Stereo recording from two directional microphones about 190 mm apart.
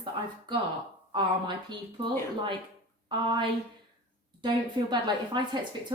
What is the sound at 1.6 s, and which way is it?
Speech, 25° right (ahead or behind).